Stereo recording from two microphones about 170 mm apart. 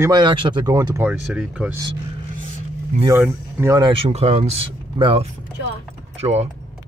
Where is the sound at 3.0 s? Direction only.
15° right (ahead or behind).